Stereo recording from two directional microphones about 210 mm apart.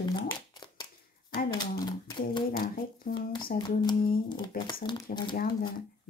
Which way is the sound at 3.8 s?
20° left (ahead or behind).